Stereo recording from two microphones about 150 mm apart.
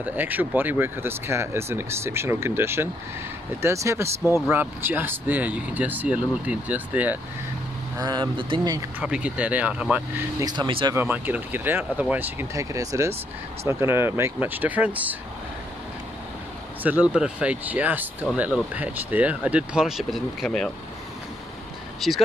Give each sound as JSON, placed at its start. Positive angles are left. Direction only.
{"t": 0.0, "sound": "speech", "side_deg": -10}
{"t": 8.0, "sound": "speech", "side_deg": -30}
{"t": 9.0, "sound": "speech", "side_deg": -5}
{"t": 10.4, "sound": "speech", "side_deg": -25}
{"t": 11.0, "sound": "speech", "side_deg": -10}
{"t": 16.8, "sound": "speech", "side_deg": -10}
{"t": 22.0, "sound": "speech", "side_deg": 0}